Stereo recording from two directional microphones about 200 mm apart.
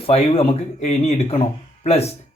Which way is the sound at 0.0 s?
30° left (ahead or behind).